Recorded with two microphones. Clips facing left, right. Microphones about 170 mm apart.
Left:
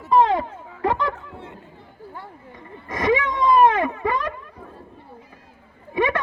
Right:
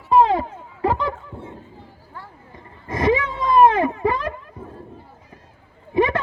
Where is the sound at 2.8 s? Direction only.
30° right (ahead or behind).